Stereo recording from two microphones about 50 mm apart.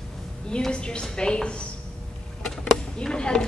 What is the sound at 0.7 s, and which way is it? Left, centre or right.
Speech, centre.